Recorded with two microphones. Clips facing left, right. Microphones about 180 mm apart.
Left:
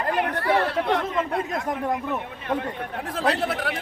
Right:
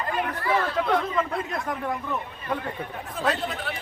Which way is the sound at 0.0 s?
65° left (ahead or behind).